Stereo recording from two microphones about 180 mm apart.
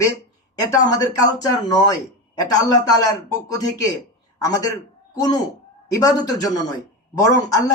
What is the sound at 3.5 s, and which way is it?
Speech, 20° left (ahead or behind).